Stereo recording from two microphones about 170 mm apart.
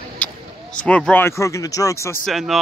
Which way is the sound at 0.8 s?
5° left (ahead or behind).